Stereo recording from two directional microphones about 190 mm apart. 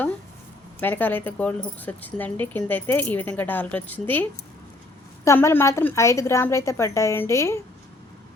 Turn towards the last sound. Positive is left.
turn(degrees=15)  # may be behind; listen again after turning